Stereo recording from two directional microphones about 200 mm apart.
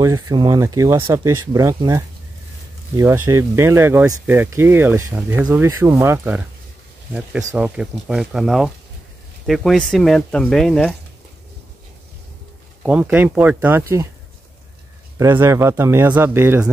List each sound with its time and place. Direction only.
0.0 s speech: 20° right (ahead or behind); by 11.0 s 5° left (ahead or behind)
12.8 s speech: 5° right (ahead or behind)
15.1 s speech: 10° right (ahead or behind)